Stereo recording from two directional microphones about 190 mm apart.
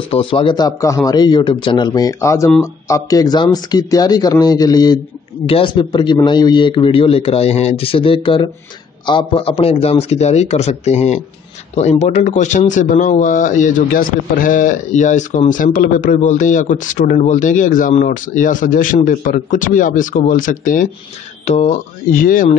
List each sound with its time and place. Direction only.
0.1 s a man's voice: 25° left (ahead or behind); by 22.6 s 45° left (ahead or behind)